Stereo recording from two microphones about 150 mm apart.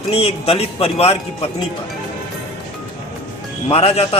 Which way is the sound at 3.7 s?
40° left (ahead or behind).